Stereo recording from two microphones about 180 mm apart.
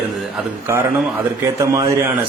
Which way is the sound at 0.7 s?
15° right (ahead or behind).